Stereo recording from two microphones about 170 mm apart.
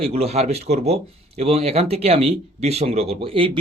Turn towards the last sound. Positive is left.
turn(degrees=-30)  # may be behind; listen again after turning